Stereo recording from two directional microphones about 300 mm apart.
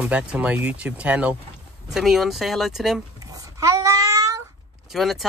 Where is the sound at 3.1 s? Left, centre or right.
Centre.